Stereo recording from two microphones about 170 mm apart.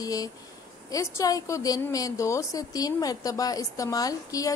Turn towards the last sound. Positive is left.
turn(degrees=20)  # may be behind; listen again after turning